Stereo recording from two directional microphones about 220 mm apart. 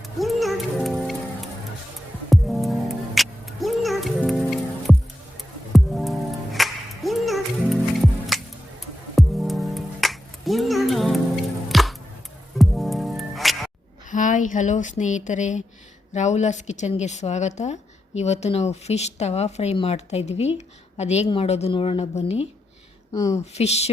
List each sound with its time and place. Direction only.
0.2 s music: centre (ahead or behind)
2.3 s music: centre (ahead or behind)
14.1 s a woman's voice: 35° left (ahead or behind)
23.1 s speech: 15° left (ahead or behind)
23.6 s a woman's voice: 30° left (ahead or behind)